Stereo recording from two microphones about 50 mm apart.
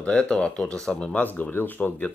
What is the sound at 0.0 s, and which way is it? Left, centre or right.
Speech, left.